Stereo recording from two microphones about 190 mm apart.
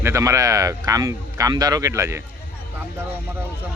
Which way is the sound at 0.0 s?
15° right (ahead or behind).